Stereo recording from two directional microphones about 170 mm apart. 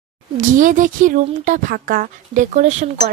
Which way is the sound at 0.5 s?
50° right (ahead or behind).